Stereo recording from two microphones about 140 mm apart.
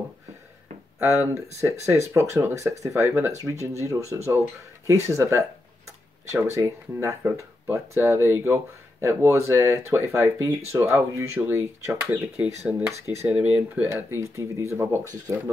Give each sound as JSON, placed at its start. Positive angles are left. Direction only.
{"t": 0.9, "sound": "speech", "side_deg": -15}
{"t": 5.0, "sound": "speech", "side_deg": -20}